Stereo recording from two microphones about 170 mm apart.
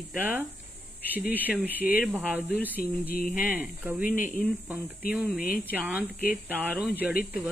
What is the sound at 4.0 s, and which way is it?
Speech, 55° left (ahead or behind).